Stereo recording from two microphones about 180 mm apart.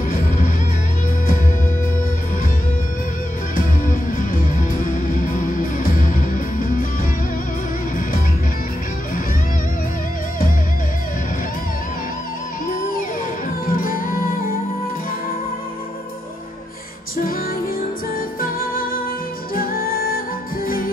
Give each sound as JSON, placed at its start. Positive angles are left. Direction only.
{"t": 3.8, "sound": "music", "side_deg": 50}
{"t": 13.7, "sound": "music", "side_deg": 50}
{"t": 18.4, "sound": "music", "side_deg": 50}